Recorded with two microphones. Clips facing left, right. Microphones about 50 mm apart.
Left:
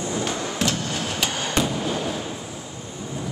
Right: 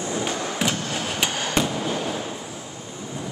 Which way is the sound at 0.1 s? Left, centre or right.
Centre.